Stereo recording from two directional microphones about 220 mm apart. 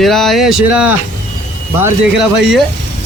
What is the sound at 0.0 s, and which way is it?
Speech, centre (ahead or behind).